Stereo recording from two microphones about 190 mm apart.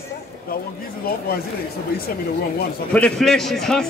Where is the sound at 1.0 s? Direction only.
50° left (ahead or behind).